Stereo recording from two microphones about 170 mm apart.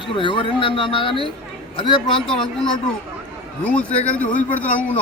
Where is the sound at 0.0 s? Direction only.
30° left (ahead or behind).